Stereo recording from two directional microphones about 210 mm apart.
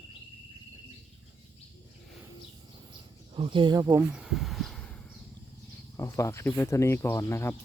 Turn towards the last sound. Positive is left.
turn(degrees=10)  # may be behind; listen again after turning